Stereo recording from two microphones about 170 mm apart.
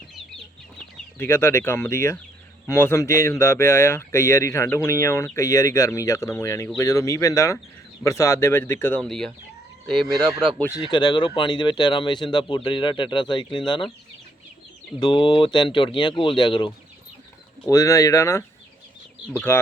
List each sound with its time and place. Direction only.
1.2 s speech: 15° left (ahead or behind)
10.2 s speech: 30° right (ahead or behind)
10.8 s speech: 25° left (ahead or behind)
14.9 s speech: 25° left (ahead or behind)
17.7 s speech: 20° left (ahead or behind)
19.5 s speech: 15° left (ahead or behind)